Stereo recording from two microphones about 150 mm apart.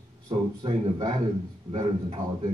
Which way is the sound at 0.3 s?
40° right (ahead or behind).